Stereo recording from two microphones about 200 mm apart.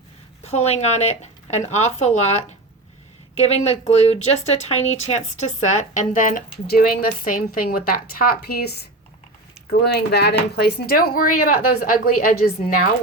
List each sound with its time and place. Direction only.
0.4 s speech: 35° left (ahead or behind)